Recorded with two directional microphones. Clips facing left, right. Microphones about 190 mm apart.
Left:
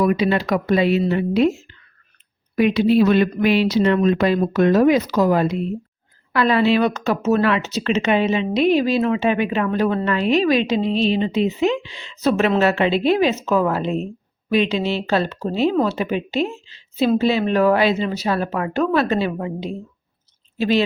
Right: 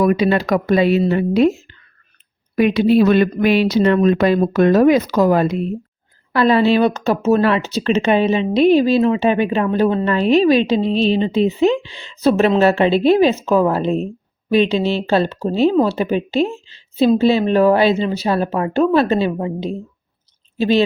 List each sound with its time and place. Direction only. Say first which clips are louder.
0.0 s speech: right 3 dB; 45° right (ahead or behind)
2.6 s speech: right 2 dB; 50° right (ahead or behind)
6.3 s speech: right 3 dB; 30° right (ahead or behind)